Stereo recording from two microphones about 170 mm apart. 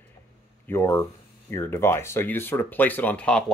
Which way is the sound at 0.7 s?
15° left (ahead or behind).